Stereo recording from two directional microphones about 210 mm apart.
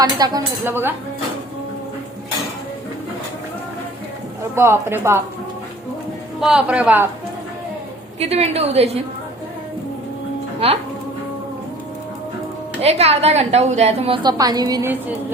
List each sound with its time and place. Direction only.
0.0 s speech: 20° right (ahead or behind)
4.5 s speech: 10° right (ahead or behind)
6.4 s a man's voice: 5° right (ahead or behind)
8.2 s a woman's voice: 30° right (ahead or behind)
10.6 s a woman's voice: 30° right (ahead or behind)
12.8 s a woman's voice: 30° right (ahead or behind)